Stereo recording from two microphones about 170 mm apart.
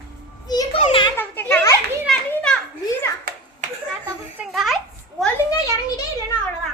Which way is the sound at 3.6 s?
45° right (ahead or behind).